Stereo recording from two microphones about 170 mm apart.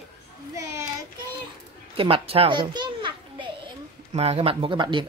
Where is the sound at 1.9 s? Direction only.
30° right (ahead or behind).